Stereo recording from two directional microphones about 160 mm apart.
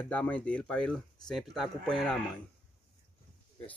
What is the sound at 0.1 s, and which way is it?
Speech, 10° left (ahead or behind).